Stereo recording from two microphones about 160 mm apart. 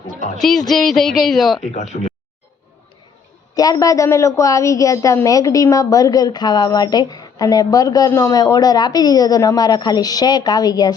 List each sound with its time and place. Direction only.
0.7 s speech: centre (ahead or behind)
1.6 s speech: 45° left (ahead or behind)
3.5 s a woman's voice: 25° left (ahead or behind)